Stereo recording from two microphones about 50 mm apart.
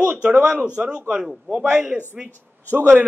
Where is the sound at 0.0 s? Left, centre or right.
Right.